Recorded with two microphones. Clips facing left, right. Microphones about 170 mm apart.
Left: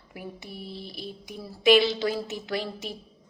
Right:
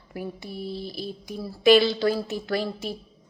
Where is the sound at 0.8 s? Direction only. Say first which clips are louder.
Right 6 dB; 40° right (ahead or behind).